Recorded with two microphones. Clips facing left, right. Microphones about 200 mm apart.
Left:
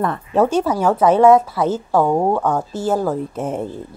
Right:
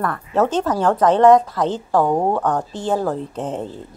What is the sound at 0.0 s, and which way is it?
Speech, 20° left (ahead or behind).